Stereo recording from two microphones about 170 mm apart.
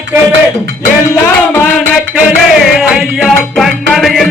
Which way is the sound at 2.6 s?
Centre (ahead or behind).